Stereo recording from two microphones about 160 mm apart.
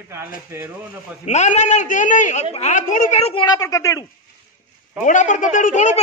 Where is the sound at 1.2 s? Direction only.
45° left (ahead or behind).